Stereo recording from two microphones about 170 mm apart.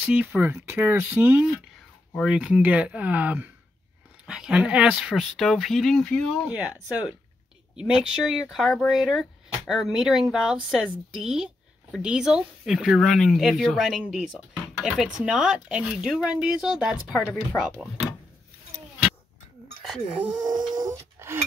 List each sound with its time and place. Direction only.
0.0 s speech: 5° right (ahead or behind)
7.7 s speech: 5° right (ahead or behind)
19.8 s speech: centre (ahead or behind)
20.4 s speech: 25° right (ahead or behind)